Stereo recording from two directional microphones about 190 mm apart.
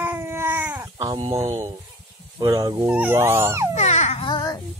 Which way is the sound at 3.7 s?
35° left (ahead or behind).